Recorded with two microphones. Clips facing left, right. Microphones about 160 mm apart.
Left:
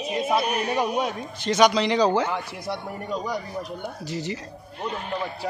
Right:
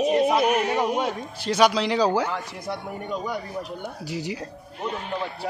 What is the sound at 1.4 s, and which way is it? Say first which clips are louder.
Speech: left 1 dB; 5° right (ahead or behind).